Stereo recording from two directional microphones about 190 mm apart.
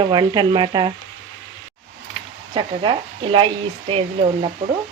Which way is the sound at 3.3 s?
25° right (ahead or behind).